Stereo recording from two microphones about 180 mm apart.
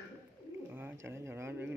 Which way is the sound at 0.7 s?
15° right (ahead or behind).